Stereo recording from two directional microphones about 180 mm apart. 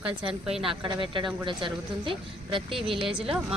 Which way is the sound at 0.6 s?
30° right (ahead or behind).